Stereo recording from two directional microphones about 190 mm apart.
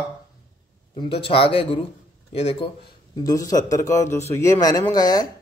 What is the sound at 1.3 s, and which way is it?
Speech, 30° left (ahead or behind).